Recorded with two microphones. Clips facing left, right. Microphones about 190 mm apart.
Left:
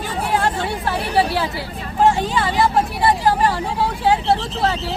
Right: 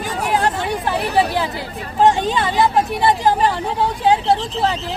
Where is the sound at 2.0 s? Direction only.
20° right (ahead or behind).